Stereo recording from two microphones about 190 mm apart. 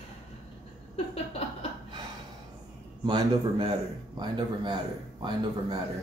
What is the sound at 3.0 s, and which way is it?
Speech, 20° right (ahead or behind).